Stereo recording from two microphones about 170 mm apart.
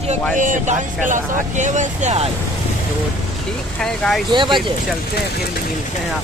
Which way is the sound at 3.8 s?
5° left (ahead or behind).